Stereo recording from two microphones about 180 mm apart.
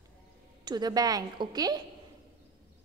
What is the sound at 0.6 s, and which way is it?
A woman's voice, 25° right (ahead or behind).